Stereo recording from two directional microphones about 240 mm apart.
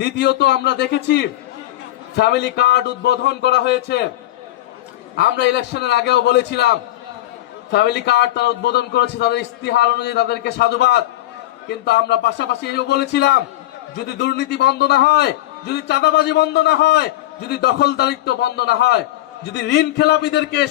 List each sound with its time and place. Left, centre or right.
0.0 s a man's voice: left
5.1 s a man's voice: left